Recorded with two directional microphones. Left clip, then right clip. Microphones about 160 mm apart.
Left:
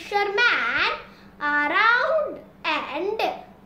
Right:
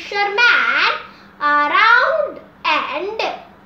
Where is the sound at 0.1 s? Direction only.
20° left (ahead or behind).